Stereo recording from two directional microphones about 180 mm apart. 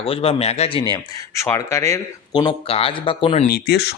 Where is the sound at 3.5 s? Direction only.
65° left (ahead or behind).